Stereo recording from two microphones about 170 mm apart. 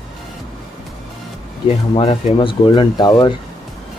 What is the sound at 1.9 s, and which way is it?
Speech, 30° left (ahead or behind).